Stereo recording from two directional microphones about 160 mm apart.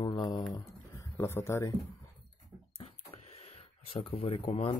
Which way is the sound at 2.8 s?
40° left (ahead or behind).